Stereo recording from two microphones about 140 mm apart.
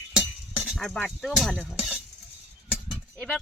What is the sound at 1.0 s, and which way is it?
Speech, 10° left (ahead or behind).